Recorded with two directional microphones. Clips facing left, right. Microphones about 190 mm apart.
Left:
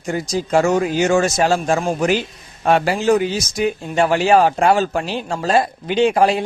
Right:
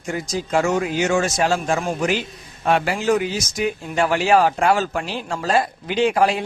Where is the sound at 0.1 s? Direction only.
30° left (ahead or behind).